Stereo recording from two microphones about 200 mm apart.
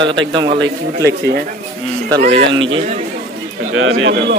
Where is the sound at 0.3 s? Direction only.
25° right (ahead or behind).